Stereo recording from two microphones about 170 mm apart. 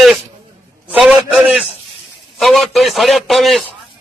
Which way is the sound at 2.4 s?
Centre (ahead or behind).